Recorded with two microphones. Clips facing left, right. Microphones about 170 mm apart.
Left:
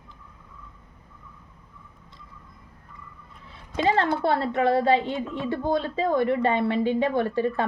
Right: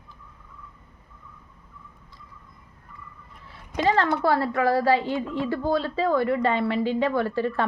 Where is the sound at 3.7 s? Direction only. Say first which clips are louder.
Even; 25° left (ahead or behind).